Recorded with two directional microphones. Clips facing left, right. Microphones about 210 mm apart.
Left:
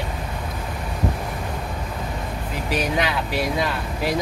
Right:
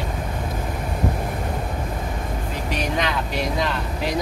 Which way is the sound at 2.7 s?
5° left (ahead or behind).